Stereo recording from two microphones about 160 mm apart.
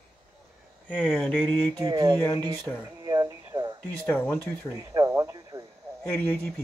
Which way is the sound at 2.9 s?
25° right (ahead or behind).